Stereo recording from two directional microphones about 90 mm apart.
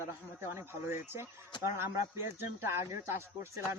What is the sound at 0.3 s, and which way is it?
Speech, 30° right (ahead or behind).